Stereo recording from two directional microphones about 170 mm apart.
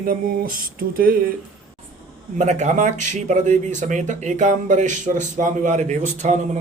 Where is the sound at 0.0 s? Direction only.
55° right (ahead or behind).